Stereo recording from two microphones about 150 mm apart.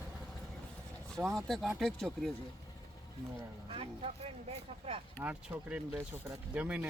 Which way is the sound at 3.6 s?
40° right (ahead or behind).